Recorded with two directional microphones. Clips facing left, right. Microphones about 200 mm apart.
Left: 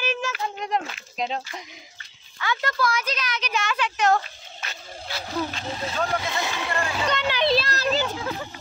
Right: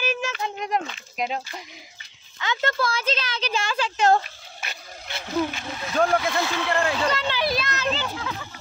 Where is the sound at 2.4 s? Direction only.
25° right (ahead or behind).